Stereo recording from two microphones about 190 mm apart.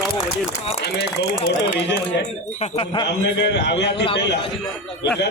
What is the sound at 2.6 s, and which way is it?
Speech, 30° left (ahead or behind).